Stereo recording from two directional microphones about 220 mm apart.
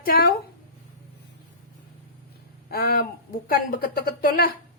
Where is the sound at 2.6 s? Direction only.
40° left (ahead or behind).